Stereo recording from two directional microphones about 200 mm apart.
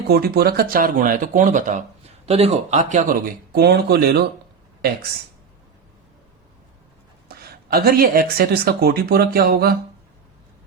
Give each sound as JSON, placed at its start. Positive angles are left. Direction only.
{"t": 0.1, "sound": "speech", "side_deg": -50}
{"t": 7.3, "sound": "speech", "side_deg": -50}